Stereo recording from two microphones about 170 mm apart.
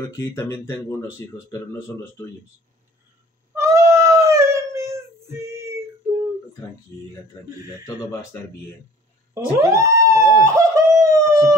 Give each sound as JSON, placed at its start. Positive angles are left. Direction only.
{"t": 0.1, "sound": "speech", "side_deg": 15}
{"t": 3.5, "sound": "cat", "side_deg": -15}
{"t": 7.8, "sound": "speech", "side_deg": 15}
{"t": 9.3, "sound": "speech", "side_deg": -20}
{"t": 10.4, "sound": "a sound", "side_deg": -20}